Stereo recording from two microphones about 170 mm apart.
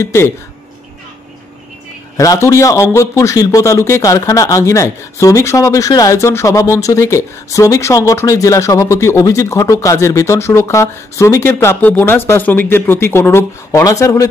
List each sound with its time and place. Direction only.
0.0 s a man's voice: 15° left (ahead or behind)
2.1 s a man's voice: 15° left (ahead or behind)